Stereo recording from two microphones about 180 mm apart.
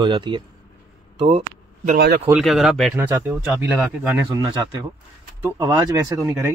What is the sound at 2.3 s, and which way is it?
Speech, centre (ahead or behind).